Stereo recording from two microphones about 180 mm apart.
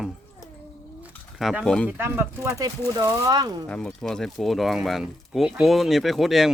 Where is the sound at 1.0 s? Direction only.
5° right (ahead or behind).